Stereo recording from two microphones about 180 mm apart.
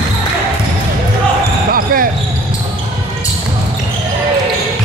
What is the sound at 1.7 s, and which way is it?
Basketball bounce, 50° right (ahead or behind).